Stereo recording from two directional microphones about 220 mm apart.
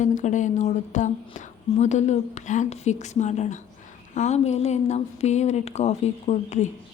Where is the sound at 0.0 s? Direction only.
35° left (ahead or behind).